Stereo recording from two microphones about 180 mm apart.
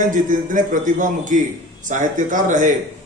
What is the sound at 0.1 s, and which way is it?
A man's voice, 45° right (ahead or behind).